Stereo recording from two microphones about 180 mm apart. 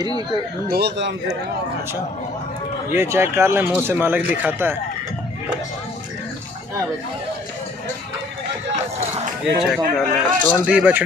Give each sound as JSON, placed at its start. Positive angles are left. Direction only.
{"t": 0.0, "sound": "speech", "side_deg": -25}
{"t": 0.7, "sound": "speech", "side_deg": -65}
{"t": 2.9, "sound": "speech", "side_deg": -15}
{"t": 9.4, "sound": "speech", "side_deg": 0}
{"t": 9.9, "sound": "speech", "side_deg": 10}
{"t": 10.6, "sound": "speech", "side_deg": -5}